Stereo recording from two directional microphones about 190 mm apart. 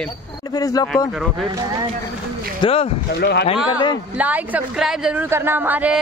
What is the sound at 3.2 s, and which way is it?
Speech, 60° left (ahead or behind).